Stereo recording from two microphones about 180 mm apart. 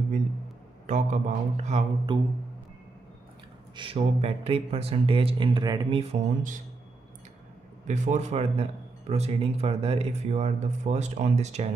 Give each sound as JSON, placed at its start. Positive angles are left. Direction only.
{"t": 0.8, "sound": "a man's voice", "side_deg": -40}
{"t": 2.1, "sound": "speech", "side_deg": -25}
{"t": 3.7, "sound": "a man's voice", "side_deg": -30}
{"t": 7.8, "sound": "a man's voice", "side_deg": -40}